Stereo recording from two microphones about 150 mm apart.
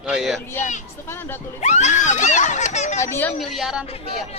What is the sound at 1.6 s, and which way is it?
Speech, 50° left (ahead or behind).